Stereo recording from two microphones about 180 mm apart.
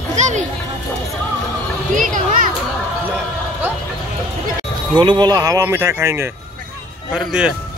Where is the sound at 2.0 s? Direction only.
45° right (ahead or behind).